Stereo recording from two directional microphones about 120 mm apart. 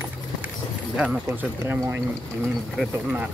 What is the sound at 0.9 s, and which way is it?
Speech, 10° right (ahead or behind).